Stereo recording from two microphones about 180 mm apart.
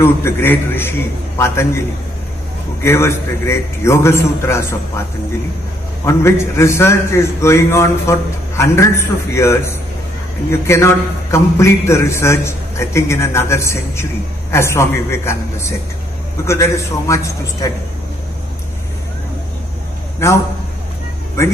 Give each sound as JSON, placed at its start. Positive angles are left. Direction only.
{"t": 0.0, "sound": "a man's voice", "side_deg": 10}
{"t": 2.8, "sound": "a man's voice", "side_deg": 15}
{"t": 6.0, "sound": "a man's voice", "side_deg": 15}
{"t": 21.4, "sound": "a man's voice", "side_deg": 15}